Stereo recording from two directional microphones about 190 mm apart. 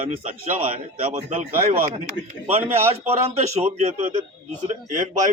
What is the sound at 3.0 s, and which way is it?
A man's voice, 35° right (ahead or behind).